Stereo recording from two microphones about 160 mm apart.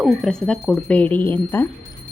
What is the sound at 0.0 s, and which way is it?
Speech, centre (ahead or behind).